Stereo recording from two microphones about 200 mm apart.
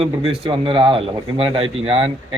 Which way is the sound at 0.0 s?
25° right (ahead or behind).